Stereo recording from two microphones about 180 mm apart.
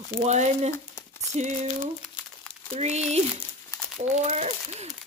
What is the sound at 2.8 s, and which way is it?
Speech, 40° right (ahead or behind).